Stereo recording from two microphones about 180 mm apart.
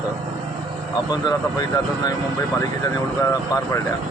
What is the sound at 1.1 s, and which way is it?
Speech, 20° left (ahead or behind).